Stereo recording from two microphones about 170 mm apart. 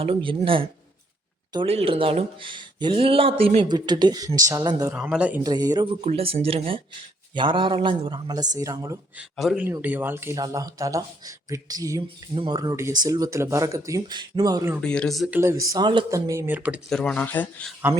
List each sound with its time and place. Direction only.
0.0 s speech: 30° right (ahead or behind)
4.9 s speech: 5° right (ahead or behind)
5.4 s speech: 25° right (ahead or behind)
9.3 s speech: centre (ahead or behind)
9.6 s speech: 10° right (ahead or behind)
14.8 s speech: 5° left (ahead or behind)
15.4 s speech: 15° right (ahead or behind)
16.9 s speech: 5° left (ahead or behind)